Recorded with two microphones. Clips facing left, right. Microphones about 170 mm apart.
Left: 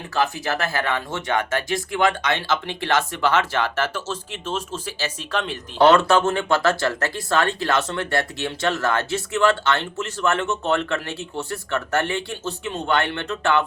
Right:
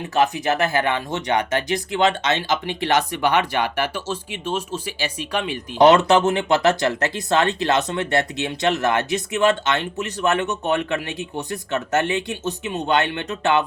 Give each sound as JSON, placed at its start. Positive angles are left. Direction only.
{"t": 0.1, "sound": "speech", "side_deg": -20}